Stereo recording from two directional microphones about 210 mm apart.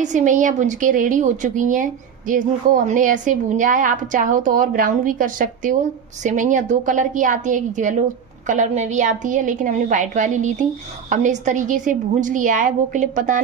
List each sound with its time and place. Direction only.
0.0 s a woman's voice: 35° right (ahead or behind)